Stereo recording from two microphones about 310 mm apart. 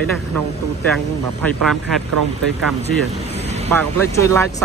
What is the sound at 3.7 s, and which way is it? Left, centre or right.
Speech, centre.